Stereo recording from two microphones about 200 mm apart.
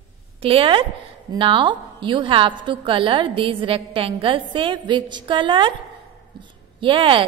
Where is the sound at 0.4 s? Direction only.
25° right (ahead or behind).